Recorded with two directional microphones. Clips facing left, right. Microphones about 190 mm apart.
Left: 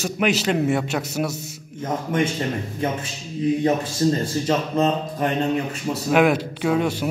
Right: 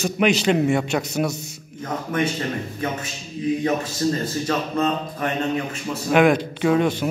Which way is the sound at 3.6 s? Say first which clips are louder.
Left 2 dB; 25° left (ahead or behind).